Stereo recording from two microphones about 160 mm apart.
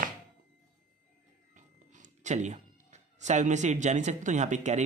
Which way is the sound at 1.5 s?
50° right (ahead or behind).